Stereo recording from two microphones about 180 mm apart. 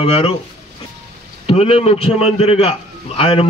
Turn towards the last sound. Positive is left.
turn(degrees=30)  # may be behind; listen again after turning